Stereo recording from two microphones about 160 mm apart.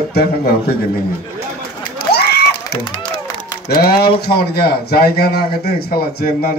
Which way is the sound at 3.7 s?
70° left (ahead or behind).